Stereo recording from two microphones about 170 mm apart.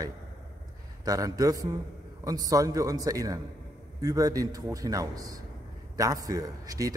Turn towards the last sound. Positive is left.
turn(degrees=-20)  # may be behind; listen again after turning